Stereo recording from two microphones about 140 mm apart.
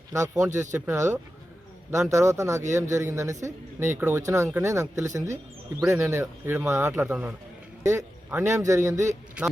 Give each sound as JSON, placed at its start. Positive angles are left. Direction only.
{"t": 0.1, "sound": "speech", "side_deg": -20}
{"t": 5.8, "sound": "speech", "side_deg": -5}
{"t": 6.1, "sound": "a man's voice", "side_deg": -15}